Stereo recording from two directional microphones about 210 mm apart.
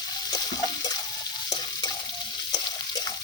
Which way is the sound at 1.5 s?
20° left (ahead or behind).